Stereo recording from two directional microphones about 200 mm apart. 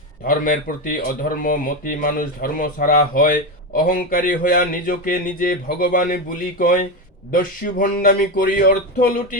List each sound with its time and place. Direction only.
0.3 s speech: 45° left (ahead or behind)